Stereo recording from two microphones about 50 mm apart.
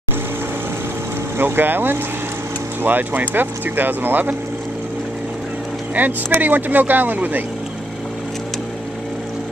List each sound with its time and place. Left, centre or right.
1.4 s speech: right
5.9 s speech: right